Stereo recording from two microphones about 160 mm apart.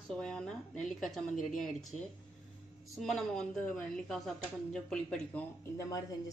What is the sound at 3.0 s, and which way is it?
Speech, centre (ahead or behind).